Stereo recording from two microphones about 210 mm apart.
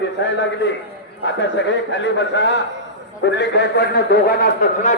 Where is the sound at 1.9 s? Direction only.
60° left (ahead or behind).